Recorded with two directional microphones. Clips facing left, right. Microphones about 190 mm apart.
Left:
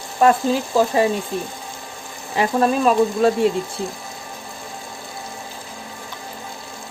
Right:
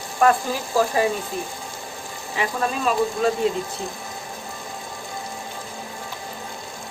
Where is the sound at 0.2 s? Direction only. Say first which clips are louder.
Left 3 dB; 25° left (ahead or behind).